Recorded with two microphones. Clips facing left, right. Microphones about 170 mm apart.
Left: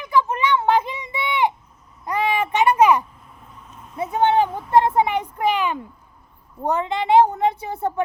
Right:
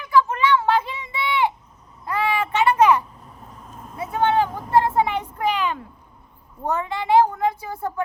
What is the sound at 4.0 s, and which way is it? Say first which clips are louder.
Vehicle: left 2 dB; 20° left (ahead or behind).